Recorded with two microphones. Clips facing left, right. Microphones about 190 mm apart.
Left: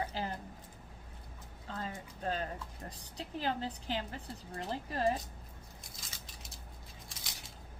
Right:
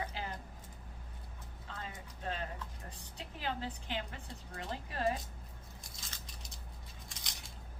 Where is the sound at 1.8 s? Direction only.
40° left (ahead or behind).